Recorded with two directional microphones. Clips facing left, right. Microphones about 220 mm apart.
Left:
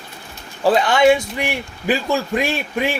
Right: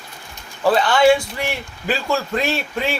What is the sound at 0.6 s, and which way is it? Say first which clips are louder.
A man's voice: left 1 dB; 15° left (ahead or behind).